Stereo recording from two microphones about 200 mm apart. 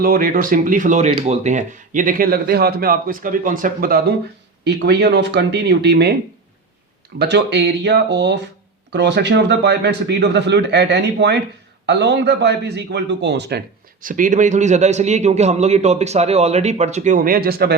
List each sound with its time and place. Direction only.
0.0 s speech: 45° right (ahead or behind)
7.2 s speech: 55° right (ahead or behind)
14.0 s a man's voice: 40° right (ahead or behind)